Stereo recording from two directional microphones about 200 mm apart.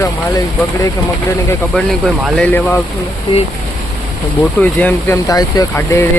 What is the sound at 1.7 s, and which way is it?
Speech, centre (ahead or behind).